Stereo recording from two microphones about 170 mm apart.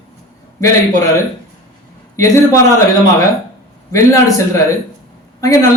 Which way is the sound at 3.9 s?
20° left (ahead or behind).